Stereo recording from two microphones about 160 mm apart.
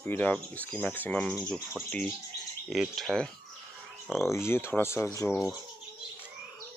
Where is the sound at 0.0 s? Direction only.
10° left (ahead or behind).